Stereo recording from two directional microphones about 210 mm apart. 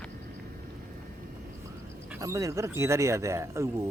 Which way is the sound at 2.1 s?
15° right (ahead or behind).